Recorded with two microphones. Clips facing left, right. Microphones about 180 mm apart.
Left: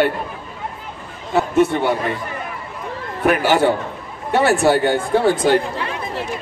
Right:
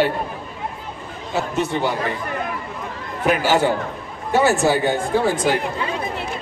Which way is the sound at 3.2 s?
60° left (ahead or behind).